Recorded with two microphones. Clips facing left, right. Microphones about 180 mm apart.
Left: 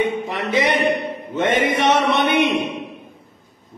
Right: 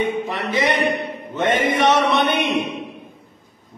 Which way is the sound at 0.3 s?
25° left (ahead or behind).